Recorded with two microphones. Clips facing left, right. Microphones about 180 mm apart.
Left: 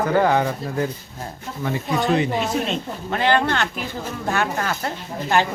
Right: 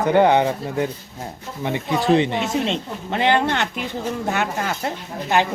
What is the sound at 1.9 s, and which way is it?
Speech, centre (ahead or behind).